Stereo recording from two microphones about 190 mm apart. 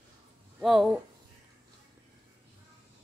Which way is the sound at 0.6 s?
Centre (ahead or behind).